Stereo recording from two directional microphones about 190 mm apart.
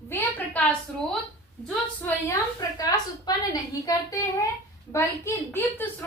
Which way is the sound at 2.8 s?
20° left (ahead or behind).